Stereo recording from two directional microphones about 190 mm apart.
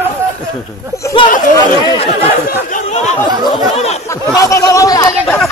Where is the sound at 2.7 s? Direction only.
40° left (ahead or behind).